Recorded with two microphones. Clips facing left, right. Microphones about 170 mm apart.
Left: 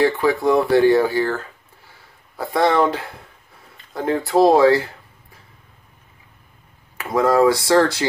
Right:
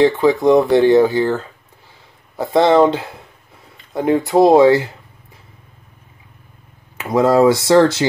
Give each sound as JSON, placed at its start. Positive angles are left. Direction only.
{"t": 0.0, "sound": "speech", "side_deg": -20}
{"t": 7.0, "sound": "speech", "side_deg": -20}